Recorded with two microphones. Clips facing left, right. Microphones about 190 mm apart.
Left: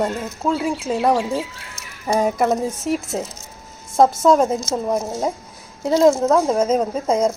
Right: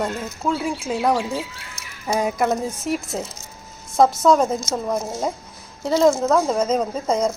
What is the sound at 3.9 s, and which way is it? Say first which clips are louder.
Speech: left 1 dB; 25° left (ahead or behind).